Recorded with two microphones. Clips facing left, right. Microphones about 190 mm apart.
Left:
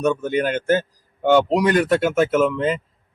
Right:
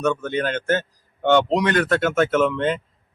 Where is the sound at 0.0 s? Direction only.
15° left (ahead or behind).